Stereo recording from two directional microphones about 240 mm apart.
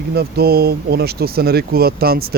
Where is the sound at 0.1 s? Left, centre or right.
Right.